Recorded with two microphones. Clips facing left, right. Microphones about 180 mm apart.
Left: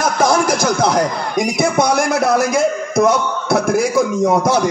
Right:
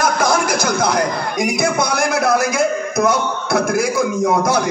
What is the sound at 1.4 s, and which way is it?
Speech, 40° left (ahead or behind).